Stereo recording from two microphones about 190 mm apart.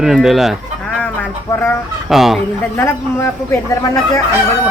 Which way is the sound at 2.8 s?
15° left (ahead or behind).